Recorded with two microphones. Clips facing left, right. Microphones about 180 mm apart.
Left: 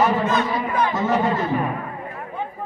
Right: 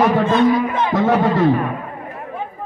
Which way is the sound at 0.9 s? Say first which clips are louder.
Right 5 dB; 90° right.